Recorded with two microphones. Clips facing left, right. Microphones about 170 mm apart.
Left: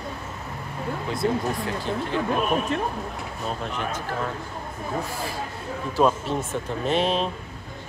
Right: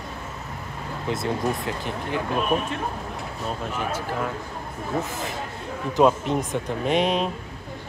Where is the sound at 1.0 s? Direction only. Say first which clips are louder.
Even; 20° right (ahead or behind).